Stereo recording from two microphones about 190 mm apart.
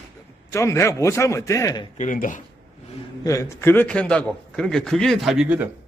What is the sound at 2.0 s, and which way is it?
Speech, 45° left (ahead or behind).